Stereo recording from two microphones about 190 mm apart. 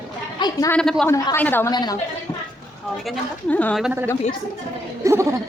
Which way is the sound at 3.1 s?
10° left (ahead or behind).